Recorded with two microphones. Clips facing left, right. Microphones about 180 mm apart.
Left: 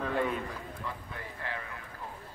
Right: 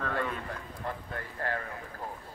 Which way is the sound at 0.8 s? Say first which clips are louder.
Right 8 dB; 50° right (ahead or behind).